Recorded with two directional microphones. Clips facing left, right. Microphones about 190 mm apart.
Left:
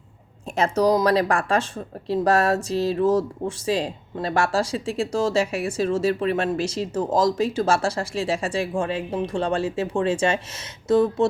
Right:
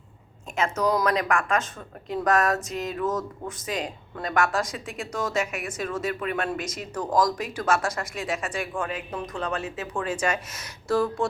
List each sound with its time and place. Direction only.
0.5 s speech: 35° left (ahead or behind)